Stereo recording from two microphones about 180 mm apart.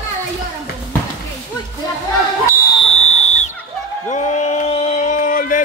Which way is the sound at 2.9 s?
35° left (ahead or behind).